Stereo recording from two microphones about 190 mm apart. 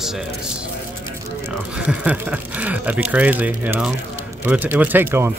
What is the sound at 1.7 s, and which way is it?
Speech, 5° right (ahead or behind).